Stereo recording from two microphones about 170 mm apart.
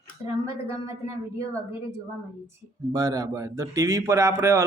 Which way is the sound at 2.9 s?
20° right (ahead or behind).